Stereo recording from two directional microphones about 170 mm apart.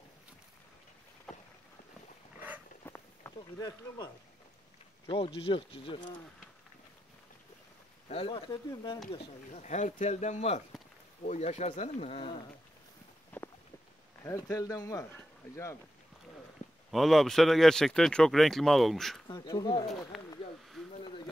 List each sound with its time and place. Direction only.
2.3 s walk: 10° right (ahead or behind)
2.8 s walk: 15° left (ahead or behind)
3.5 s speech: 20° left (ahead or behind)
8.1 s speech: 35° left (ahead or behind)
9.1 s speech: 40° left (ahead or behind)
13.3 s walk: 10° left (ahead or behind)
14.2 s speech: 20° left (ahead or behind)
16.9 s speech: centre (ahead or behind)
19.2 s speech: 25° left (ahead or behind)
19.9 s speech: centre (ahead or behind)
20.9 s a sound: 30° left (ahead or behind)